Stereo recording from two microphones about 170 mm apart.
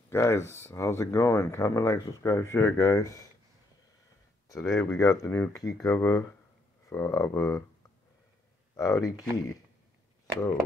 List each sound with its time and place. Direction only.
0.1 s speech: 15° left (ahead or behind)
4.5 s speech: 20° left (ahead or behind)
8.7 s speech: 20° left (ahead or behind)